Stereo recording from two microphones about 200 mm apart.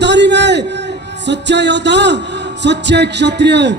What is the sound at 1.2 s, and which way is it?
A man's voice, 60° right (ahead or behind).